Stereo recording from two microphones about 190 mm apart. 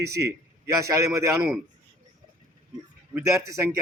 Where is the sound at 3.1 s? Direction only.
15° right (ahead or behind).